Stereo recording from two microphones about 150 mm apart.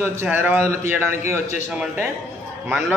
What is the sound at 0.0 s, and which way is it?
A man's voice, 10° right (ahead or behind).